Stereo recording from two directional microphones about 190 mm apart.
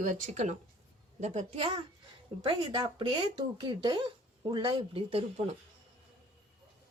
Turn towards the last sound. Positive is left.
turn(degrees=-30)  # may be behind; listen again after turning